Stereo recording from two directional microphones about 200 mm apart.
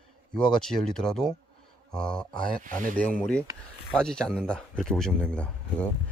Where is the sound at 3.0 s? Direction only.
5° left (ahead or behind).